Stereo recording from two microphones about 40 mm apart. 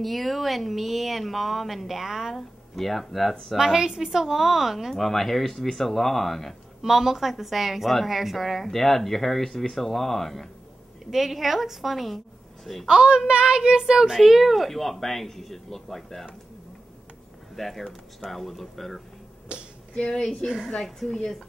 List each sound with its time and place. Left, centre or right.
0.0 s a woman's voice: centre
2.3 s speech: centre
3.5 s a woman's voice: centre
6.8 s a woman's voice: centre
12.8 s a woman's voice: right; by 16.3 s centre
17.6 s a woman's voice: centre
19.5 s finger snapping: right
20.0 s a woman's voice: left
20.4 s a woman's voice: centre